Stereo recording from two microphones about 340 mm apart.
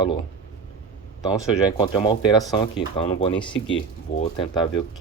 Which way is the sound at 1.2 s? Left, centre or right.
Centre.